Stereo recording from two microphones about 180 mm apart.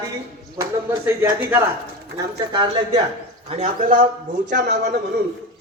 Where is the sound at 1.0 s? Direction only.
10° right (ahead or behind).